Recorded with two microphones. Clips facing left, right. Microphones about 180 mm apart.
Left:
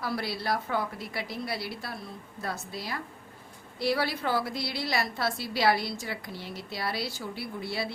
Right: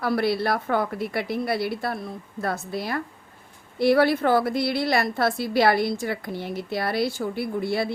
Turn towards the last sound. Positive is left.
turn(degrees=-55)  # may be behind; listen again after turning